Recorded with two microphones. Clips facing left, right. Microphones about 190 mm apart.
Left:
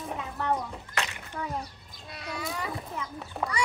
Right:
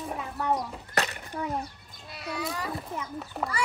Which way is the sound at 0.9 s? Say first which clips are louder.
Right 5 dB; 40° right (ahead or behind).